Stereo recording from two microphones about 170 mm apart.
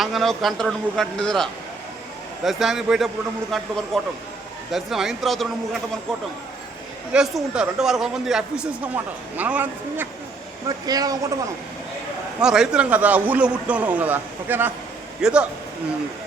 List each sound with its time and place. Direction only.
0.0 s a man's voice: centre (ahead or behind)
7.1 s a man's voice: 5° right (ahead or behind)
10.7 s a man's voice: 20° right (ahead or behind)
12.4 s a man's voice: 5° right (ahead or behind)